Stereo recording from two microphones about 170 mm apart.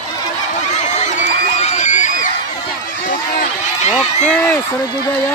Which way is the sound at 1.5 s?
45° left (ahead or behind).